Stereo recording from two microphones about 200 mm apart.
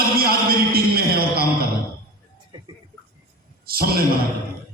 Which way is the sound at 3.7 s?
50° right (ahead or behind).